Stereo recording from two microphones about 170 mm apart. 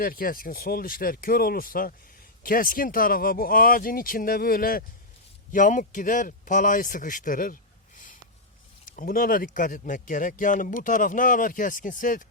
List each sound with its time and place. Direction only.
0.0 s speech: 55° left (ahead or behind)
7.9 s sniff: 50° left (ahead or behind)
9.0 s speech: 55° left (ahead or behind)